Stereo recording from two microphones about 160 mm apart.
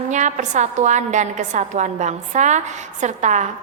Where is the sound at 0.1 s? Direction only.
50° right (ahead or behind).